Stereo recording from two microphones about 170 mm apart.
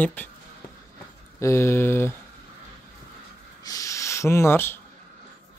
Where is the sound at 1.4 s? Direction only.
15° left (ahead or behind).